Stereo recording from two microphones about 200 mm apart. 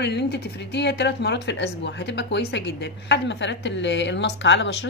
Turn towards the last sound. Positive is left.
turn(degrees=60)  # may be behind; listen again after turning